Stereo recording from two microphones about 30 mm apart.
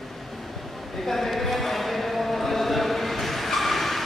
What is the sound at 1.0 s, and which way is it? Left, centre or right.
Clip-clop, centre.